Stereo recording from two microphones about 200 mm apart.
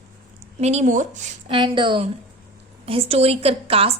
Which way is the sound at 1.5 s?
25° right (ahead or behind).